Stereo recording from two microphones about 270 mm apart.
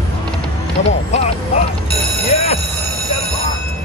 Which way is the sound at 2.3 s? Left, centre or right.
Left.